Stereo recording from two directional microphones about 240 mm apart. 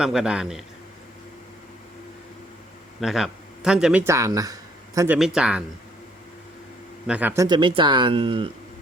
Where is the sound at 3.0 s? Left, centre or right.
Centre.